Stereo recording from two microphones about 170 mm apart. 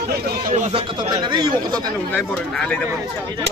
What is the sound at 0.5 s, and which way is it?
Speech, 45° right (ahead or behind).